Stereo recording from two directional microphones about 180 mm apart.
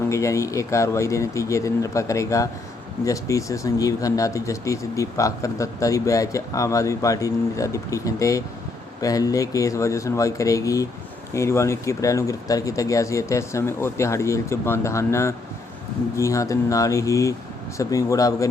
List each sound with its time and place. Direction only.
0.1 s speech: 15° left (ahead or behind)